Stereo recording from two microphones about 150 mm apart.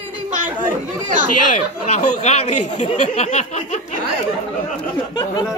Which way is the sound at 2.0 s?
45° left (ahead or behind).